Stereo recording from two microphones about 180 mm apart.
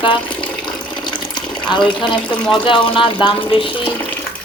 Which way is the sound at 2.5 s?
25° left (ahead or behind).